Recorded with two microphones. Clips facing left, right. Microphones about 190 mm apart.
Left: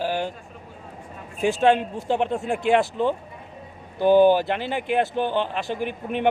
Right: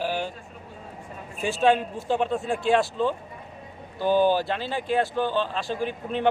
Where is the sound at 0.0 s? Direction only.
15° left (ahead or behind).